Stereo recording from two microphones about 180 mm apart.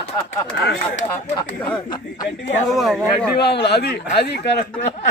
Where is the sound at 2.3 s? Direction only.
Centre (ahead or behind).